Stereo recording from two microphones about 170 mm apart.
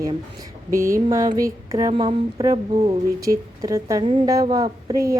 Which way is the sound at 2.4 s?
20° right (ahead or behind).